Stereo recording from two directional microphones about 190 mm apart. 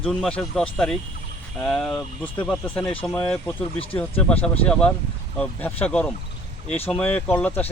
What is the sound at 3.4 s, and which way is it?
Speech, 30° left (ahead or behind).